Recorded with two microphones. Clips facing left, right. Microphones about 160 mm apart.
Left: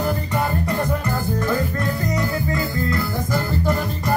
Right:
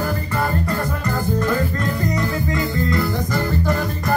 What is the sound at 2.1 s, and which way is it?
Music, centre (ahead or behind).